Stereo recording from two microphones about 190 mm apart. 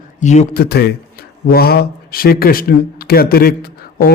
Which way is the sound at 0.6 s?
60° left (ahead or behind).